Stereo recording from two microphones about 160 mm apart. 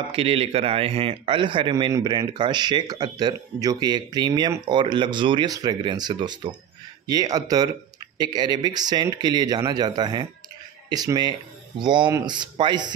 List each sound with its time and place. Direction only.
0.1 s a man's voice: 35° right (ahead or behind)